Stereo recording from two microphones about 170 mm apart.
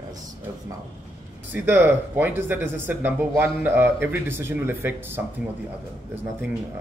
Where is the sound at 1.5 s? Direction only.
10° right (ahead or behind).